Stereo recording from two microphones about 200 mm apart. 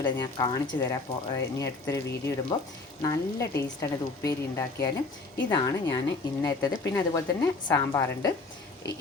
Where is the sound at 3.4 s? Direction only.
15° left (ahead or behind).